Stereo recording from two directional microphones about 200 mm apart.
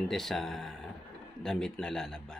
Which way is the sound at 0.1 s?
Centre (ahead or behind).